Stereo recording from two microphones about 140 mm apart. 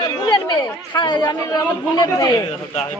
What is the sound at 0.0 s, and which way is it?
Chatter, 30° left (ahead or behind).